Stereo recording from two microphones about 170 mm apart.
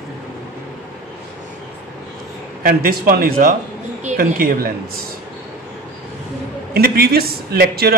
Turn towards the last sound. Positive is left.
turn(degrees=-65)  # may be behind; listen again after turning